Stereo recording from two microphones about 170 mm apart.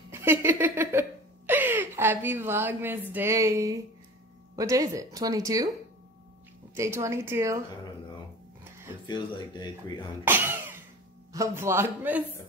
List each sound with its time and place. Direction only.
0.1 s a sound: 15° right (ahead or behind)
1.5 s a woman's voice: 10° right (ahead or behind)
6.7 s a man's voice: 15° right (ahead or behind)
9.0 s speech: 25° left (ahead or behind)
10.2 s cough: 15° right (ahead or behind)
11.3 s a man's voice: 15° right (ahead or behind)